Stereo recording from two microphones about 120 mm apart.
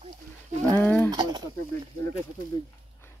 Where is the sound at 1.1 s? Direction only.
35° right (ahead or behind).